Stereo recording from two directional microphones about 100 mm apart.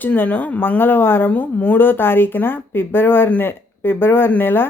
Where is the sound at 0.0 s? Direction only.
15° left (ahead or behind).